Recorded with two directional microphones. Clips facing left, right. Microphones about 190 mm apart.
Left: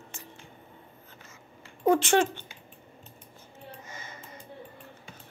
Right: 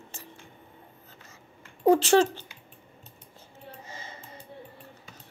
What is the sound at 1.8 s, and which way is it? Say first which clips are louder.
Speech: right 3 dB; 35° right (ahead or behind).